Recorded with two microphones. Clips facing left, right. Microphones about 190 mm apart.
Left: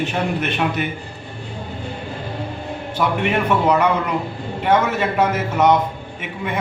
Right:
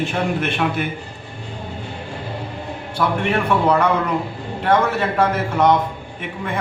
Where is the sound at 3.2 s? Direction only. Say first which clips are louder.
Even; 5° left (ahead or behind).